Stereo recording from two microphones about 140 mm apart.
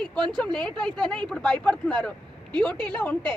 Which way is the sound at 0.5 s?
5° left (ahead or behind).